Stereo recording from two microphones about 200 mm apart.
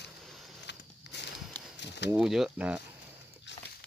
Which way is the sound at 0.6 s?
60° left (ahead or behind).